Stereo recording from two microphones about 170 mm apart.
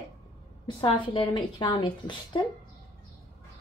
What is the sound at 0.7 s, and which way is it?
A woman's voice, 30° left (ahead or behind).